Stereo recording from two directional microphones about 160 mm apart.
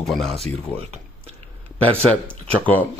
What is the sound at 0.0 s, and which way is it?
Speech, centre (ahead or behind).